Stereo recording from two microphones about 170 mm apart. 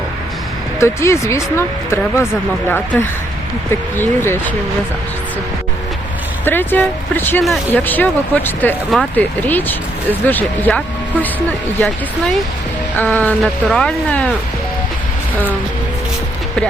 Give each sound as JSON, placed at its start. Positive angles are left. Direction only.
{"t": 0.8, "sound": "speech", "side_deg": 15}
{"t": 6.4, "sound": "speech", "side_deg": 10}
{"t": 13.0, "sound": "speech", "side_deg": 10}